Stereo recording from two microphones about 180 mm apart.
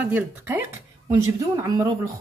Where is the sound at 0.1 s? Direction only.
10° right (ahead or behind).